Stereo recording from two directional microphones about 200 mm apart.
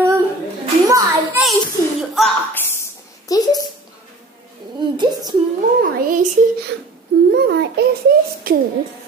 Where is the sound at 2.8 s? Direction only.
20° left (ahead or behind).